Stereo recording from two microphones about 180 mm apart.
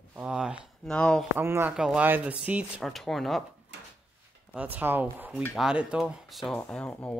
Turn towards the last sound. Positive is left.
turn(degrees=5)  # may be behind; listen again after turning